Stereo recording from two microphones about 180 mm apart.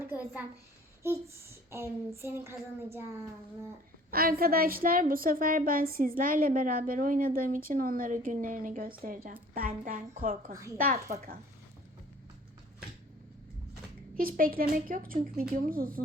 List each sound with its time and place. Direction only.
0.0 s a child's voice: 10° right (ahead or behind)
1.7 s a child's voice: 15° right (ahead or behind)
4.1 s a woman's voice: 55° right (ahead or behind)
10.5 s a child's voice: 15° right (ahead or behind)
14.2 s a woman's voice: 55° right (ahead or behind)